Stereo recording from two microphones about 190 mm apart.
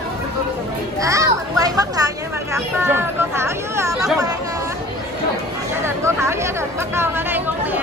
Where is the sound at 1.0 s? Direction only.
15° right (ahead or behind).